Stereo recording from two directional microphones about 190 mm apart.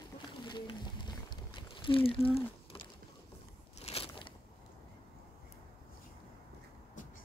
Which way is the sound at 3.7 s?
30° left (ahead or behind).